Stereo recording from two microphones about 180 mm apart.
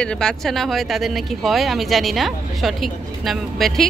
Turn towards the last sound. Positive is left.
turn(degrees=0)  # may be behind; listen again after turning